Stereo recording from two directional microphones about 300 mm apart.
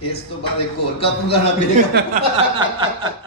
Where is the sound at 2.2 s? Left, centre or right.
Centre.